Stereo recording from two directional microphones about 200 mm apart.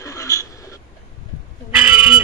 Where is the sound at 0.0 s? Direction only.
15° left (ahead or behind).